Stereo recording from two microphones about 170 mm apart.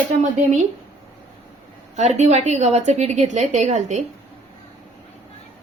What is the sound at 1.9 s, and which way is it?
A woman's voice, 45° right (ahead or behind).